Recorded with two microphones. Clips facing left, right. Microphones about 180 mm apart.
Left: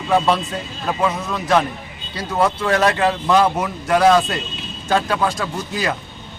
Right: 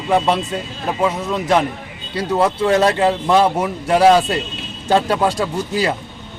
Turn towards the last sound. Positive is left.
turn(degrees=-30)  # may be behind; listen again after turning